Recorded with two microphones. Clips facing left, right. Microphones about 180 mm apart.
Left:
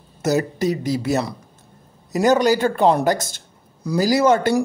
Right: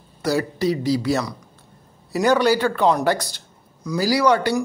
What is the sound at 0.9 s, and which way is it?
Speech, 25° left (ahead or behind).